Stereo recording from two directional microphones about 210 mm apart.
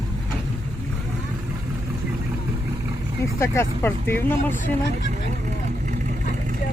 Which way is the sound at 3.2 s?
10° left (ahead or behind).